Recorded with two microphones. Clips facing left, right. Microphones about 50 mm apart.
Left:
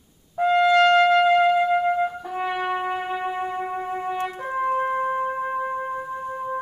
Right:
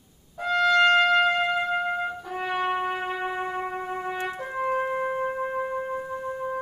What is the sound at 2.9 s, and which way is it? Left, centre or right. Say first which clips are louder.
Trumpet: left 2 dB; centre.